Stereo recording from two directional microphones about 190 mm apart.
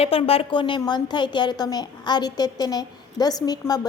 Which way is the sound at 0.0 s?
30° left (ahead or behind).